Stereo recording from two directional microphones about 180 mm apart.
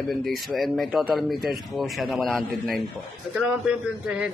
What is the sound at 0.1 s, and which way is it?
Speech, centre (ahead or behind).